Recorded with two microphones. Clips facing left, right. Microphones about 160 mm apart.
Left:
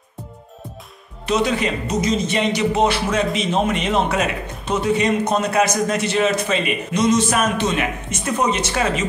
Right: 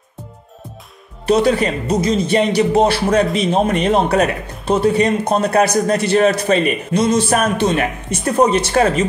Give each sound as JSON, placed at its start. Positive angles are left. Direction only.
{"t": 1.2, "sound": "a man's voice", "side_deg": -35}
{"t": 7.6, "sound": "a man's voice", "side_deg": -45}